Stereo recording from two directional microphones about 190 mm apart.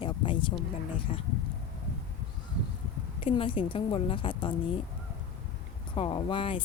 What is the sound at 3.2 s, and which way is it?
A woman's voice, 30° left (ahead or behind).